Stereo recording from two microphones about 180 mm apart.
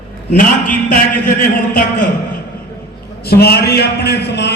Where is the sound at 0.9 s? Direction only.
50° left (ahead or behind).